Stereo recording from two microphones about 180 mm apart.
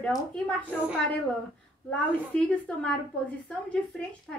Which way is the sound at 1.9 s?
5° left (ahead or behind).